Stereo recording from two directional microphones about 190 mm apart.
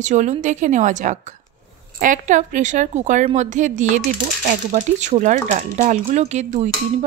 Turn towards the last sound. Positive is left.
turn(degrees=-35)  # may be behind; listen again after turning